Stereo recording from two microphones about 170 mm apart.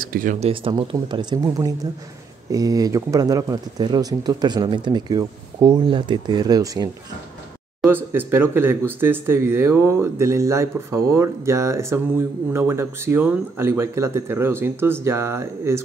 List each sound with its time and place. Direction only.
0.0 s speech: 55° right (ahead or behind)
0.4 s speech: 30° right (ahead or behind)
2.5 s speech: 20° right (ahead or behind)